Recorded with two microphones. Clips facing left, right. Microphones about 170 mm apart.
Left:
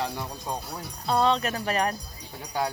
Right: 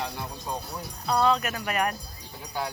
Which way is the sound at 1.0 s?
25° left (ahead or behind).